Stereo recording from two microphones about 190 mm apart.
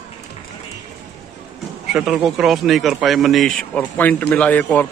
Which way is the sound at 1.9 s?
5° right (ahead or behind).